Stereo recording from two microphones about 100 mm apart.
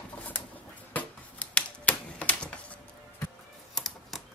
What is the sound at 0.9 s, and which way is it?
Typewriter, 15° left (ahead or behind).